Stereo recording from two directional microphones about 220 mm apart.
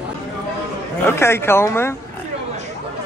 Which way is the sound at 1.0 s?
10° left (ahead or behind).